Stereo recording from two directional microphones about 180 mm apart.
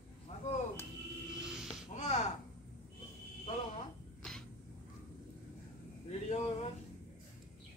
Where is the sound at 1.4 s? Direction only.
5° right (ahead or behind).